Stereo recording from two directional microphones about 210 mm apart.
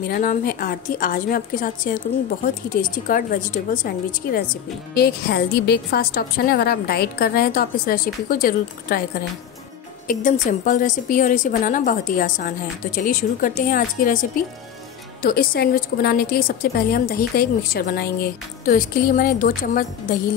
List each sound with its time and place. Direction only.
0.0 s a woman's voice: 40° left (ahead or behind)
10.0 s a woman's voice: 40° left (ahead or behind)
15.2 s a woman's voice: 45° left (ahead or behind)